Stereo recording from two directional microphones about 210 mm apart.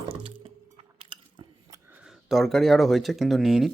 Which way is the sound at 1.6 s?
15° right (ahead or behind).